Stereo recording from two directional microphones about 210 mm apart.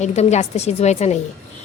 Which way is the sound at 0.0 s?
35° left (ahead or behind).